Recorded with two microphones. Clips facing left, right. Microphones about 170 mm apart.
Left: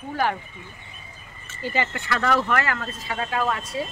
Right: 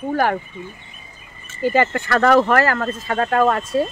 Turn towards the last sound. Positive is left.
turn(degrees=-50)  # may be behind; listen again after turning